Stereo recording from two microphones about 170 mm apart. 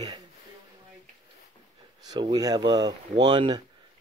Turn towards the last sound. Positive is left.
turn(degrees=-25)  # may be behind; listen again after turning